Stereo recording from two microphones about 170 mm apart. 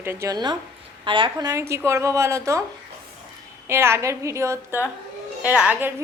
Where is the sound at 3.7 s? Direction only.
15° right (ahead or behind).